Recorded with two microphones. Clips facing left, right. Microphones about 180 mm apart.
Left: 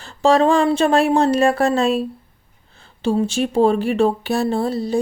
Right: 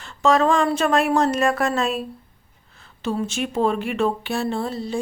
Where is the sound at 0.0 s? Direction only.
35° left (ahead or behind).